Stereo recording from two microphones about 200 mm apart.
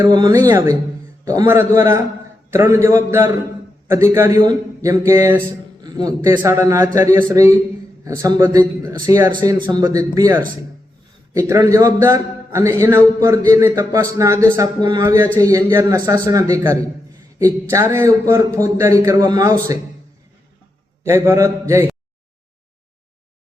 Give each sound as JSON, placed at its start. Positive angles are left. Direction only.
{"t": 0.0, "sound": "a man's voice", "side_deg": -20}
{"t": 21.0, "sound": "a man's voice", "side_deg": -10}